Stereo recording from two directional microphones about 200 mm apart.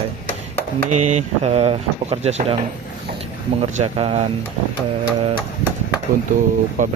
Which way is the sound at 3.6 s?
30° right (ahead or behind).